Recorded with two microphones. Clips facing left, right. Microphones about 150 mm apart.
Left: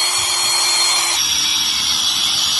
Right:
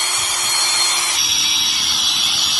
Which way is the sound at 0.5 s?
20° left (ahead or behind).